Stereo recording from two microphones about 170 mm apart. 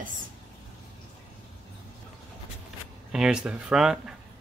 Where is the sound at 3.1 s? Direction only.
5° right (ahead or behind).